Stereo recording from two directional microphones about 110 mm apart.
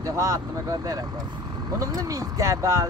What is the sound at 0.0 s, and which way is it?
Speech, 30° right (ahead or behind).